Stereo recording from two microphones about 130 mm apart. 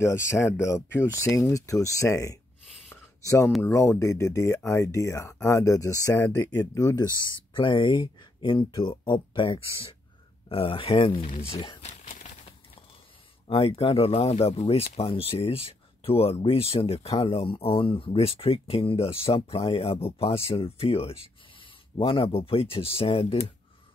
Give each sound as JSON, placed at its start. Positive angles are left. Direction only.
{"t": 0.0, "sound": "speech", "side_deg": 20}
{"t": 2.9, "sound": "a sound", "side_deg": 20}
{"t": 3.6, "sound": "speech", "side_deg": 20}
{"t": 7.5, "sound": "speech", "side_deg": 40}
{"t": 11.8, "sound": "a sound", "side_deg": 65}
{"t": 13.5, "sound": "speech", "side_deg": 50}